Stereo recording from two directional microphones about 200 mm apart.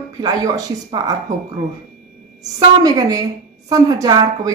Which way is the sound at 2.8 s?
20° right (ahead or behind).